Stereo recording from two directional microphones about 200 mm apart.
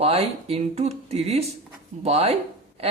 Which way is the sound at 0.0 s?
30° right (ahead or behind).